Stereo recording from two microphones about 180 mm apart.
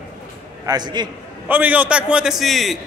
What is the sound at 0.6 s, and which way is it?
Speech, 20° right (ahead or behind).